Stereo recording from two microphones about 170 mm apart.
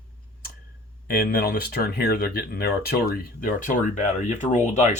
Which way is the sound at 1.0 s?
60° left (ahead or behind).